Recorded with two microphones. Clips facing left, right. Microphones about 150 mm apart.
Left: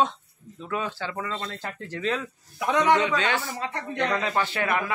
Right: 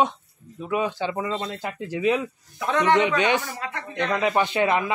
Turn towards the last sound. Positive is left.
turn(degrees=-20)  # may be behind; listen again after turning